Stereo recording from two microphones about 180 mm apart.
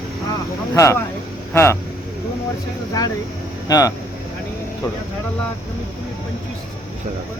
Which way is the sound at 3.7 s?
20° left (ahead or behind).